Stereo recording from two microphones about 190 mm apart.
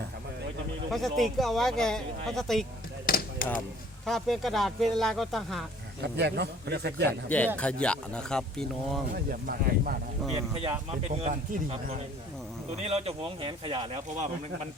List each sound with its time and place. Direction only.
0.9 s speech: centre (ahead or behind)
3.1 s chop: 50° left (ahead or behind)
4.0 s speech: centre (ahead or behind)
6.0 s a man's voice: 65° right (ahead or behind)
7.1 s speech: 10° left (ahead or behind)
9.1 s speech: 50° right (ahead or behind)
10.5 s speech: 30° right (ahead or behind)